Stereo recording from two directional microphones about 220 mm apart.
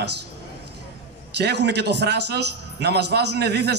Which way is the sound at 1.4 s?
50° right (ahead or behind).